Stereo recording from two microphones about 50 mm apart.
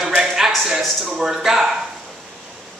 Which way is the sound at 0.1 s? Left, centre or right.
Centre.